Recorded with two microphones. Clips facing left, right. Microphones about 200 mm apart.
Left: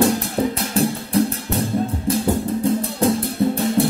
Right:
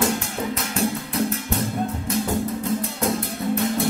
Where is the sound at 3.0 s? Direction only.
30° left (ahead or behind).